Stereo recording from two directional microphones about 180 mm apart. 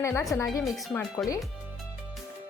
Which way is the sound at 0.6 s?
Centre (ahead or behind).